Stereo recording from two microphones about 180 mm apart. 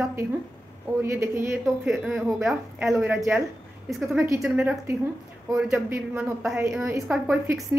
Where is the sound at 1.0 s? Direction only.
15° right (ahead or behind).